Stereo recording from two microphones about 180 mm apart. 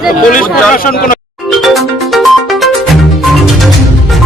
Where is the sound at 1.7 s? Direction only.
Centre (ahead or behind).